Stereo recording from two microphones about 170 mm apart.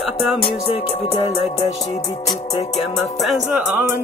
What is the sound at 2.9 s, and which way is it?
Music, centre (ahead or behind).